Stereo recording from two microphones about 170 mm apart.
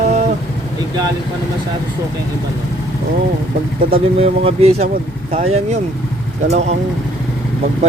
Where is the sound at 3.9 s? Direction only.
35° right (ahead or behind).